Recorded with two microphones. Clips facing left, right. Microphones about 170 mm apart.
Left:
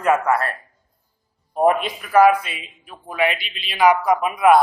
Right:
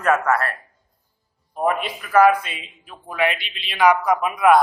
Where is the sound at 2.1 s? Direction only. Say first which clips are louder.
Left 1 dB; 10° left (ahead or behind).